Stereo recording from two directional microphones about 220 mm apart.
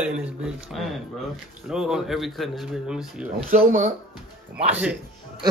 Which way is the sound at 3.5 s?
40° right (ahead or behind).